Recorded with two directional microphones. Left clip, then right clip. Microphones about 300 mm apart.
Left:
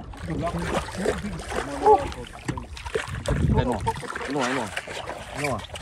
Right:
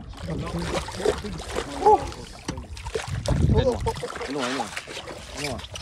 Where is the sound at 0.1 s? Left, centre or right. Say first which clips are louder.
Even; centre.